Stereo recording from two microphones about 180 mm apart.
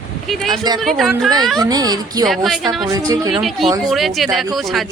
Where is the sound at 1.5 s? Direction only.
20° right (ahead or behind).